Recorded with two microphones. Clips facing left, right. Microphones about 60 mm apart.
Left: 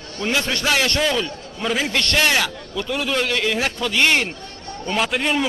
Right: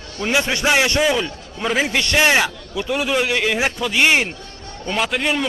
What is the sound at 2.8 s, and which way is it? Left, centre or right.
A man's voice, centre.